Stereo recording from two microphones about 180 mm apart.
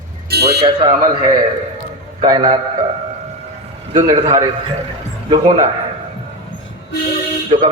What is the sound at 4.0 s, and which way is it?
Speech, 20° right (ahead or behind).